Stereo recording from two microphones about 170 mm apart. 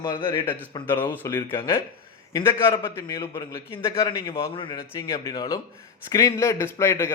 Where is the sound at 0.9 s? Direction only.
10° left (ahead or behind).